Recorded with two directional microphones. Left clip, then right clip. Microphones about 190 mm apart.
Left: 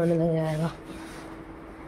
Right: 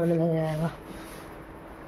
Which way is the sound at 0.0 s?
Centre (ahead or behind).